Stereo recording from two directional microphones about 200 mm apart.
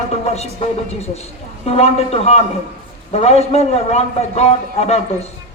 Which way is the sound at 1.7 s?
30° left (ahead or behind).